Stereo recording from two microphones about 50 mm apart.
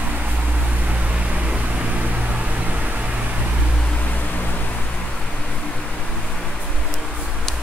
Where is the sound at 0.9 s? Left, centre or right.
Right.